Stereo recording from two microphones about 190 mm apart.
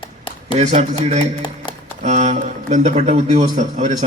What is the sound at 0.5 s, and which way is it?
A man's voice, 35° right (ahead or behind).